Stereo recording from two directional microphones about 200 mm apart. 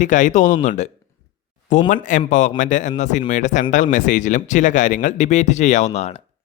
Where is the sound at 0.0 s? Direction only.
40° left (ahead or behind).